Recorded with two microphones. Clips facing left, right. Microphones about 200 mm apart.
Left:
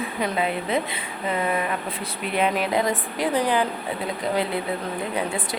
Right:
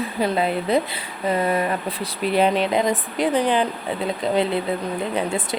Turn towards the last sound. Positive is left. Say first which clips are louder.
# right 3 dB
turn(degrees=-25)  # may be behind; listen again after turning